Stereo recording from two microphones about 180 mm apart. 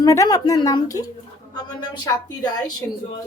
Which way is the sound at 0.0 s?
20° left (ahead or behind).